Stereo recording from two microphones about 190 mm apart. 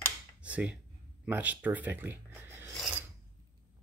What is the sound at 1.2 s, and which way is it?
Speech, 10° right (ahead or behind).